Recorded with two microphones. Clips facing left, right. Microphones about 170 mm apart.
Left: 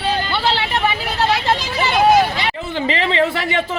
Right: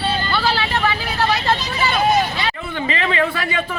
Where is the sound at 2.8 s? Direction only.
25° left (ahead or behind).